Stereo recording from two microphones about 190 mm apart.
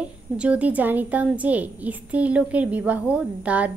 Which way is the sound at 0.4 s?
5° right (ahead or behind).